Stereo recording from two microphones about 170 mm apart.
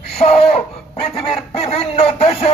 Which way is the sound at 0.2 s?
40° left (ahead or behind).